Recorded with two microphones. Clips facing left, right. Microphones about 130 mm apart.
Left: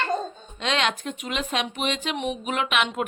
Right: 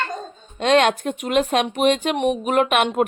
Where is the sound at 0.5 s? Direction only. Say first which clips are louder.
Right 9 dB; 50° right (ahead or behind).